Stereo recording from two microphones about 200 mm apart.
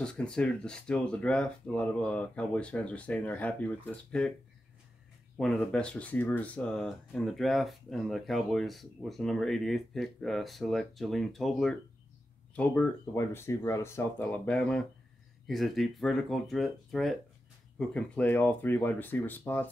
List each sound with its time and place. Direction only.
0.0 s speech: 5° left (ahead or behind)
5.4 s speech: 5° left (ahead or behind)